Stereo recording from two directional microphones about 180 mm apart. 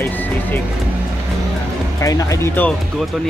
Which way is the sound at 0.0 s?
10° left (ahead or behind).